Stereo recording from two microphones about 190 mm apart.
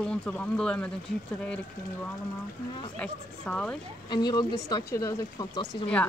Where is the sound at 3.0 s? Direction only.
5° left (ahead or behind).